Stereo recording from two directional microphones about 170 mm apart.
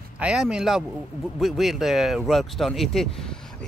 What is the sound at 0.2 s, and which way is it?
Speech, 5° right (ahead or behind).